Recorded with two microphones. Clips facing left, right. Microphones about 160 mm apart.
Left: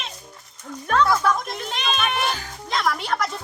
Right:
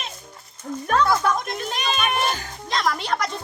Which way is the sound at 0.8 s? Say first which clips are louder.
Left 1 dB; 5° right (ahead or behind).